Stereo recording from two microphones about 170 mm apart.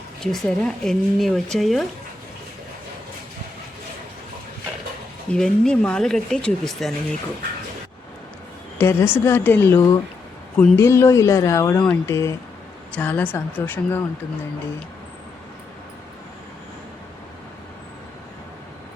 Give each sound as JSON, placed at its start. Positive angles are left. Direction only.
{"t": 0.2, "sound": "speech", "side_deg": 0}
{"t": 5.3, "sound": "speech", "side_deg": 5}
{"t": 8.8, "sound": "a woman's voice", "side_deg": 15}